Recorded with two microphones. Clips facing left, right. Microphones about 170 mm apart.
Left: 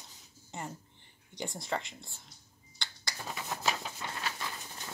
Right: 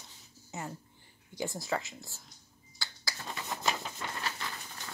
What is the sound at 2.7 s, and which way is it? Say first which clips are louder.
Finger snapping: even; 5° right (ahead or behind).